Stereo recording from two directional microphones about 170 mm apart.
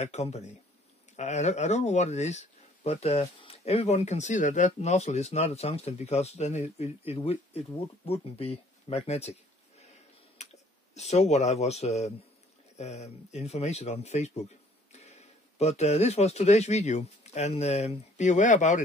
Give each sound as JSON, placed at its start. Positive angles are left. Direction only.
{"t": 0.0, "sound": "speech", "side_deg": 40}
{"t": 10.4, "sound": "a sound", "side_deg": 40}
{"t": 11.0, "sound": "speech", "side_deg": 40}